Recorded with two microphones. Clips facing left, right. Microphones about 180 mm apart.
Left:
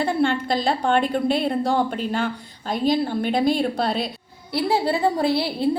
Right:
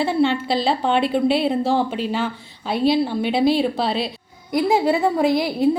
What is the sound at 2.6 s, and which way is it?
Speech, 45° left (ahead or behind).